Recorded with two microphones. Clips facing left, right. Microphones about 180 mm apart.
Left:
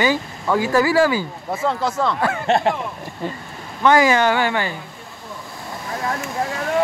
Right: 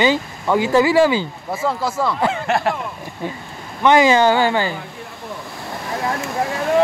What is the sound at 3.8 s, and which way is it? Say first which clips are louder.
Speech: right 2 dB; 25° right (ahead or behind).